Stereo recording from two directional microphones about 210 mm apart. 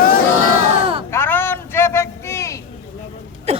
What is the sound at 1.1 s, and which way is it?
A man's voice, 10° left (ahead or behind).